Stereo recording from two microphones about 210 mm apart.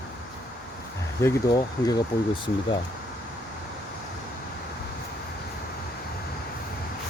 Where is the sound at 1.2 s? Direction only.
15° left (ahead or behind).